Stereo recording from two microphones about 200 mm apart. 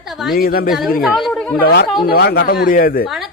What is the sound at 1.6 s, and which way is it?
Speech, 55° left (ahead or behind).